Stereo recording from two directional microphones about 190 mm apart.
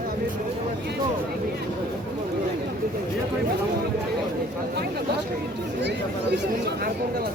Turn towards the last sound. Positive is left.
turn(degrees=-65)  # may be behind; listen again after turning